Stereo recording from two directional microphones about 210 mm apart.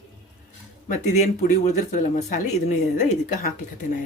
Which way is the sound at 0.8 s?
35° left (ahead or behind).